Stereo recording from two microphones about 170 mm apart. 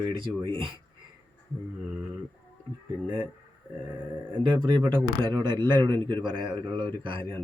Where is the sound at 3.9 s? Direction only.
10° right (ahead or behind).